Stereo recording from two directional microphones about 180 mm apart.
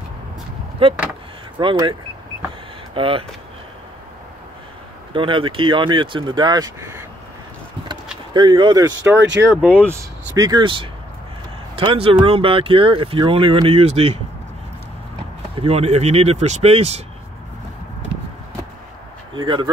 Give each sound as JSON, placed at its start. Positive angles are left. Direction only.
{"t": 0.8, "sound": "speech", "side_deg": -30}
{"t": 5.1, "sound": "speech", "side_deg": -30}
{"t": 8.3, "sound": "speech", "side_deg": -25}
{"t": 9.6, "sound": "speech", "side_deg": -10}
{"t": 10.3, "sound": "speech", "side_deg": -20}
{"t": 15.5, "sound": "speech", "side_deg": -35}
{"t": 19.3, "sound": "speech", "side_deg": -25}